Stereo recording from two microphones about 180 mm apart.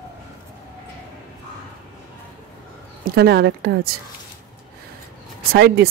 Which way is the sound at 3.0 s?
65° right (ahead or behind).